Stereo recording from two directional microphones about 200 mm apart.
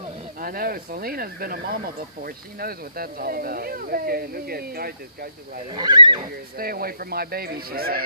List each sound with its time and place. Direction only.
0.4 s speech: 45° right (ahead or behind)
5.7 s speech: 20° right (ahead or behind)
6.5 s speech: 45° right (ahead or behind)